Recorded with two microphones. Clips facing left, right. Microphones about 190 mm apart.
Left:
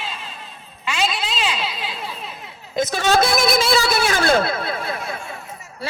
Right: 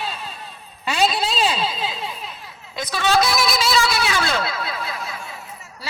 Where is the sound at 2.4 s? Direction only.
30° left (ahead or behind).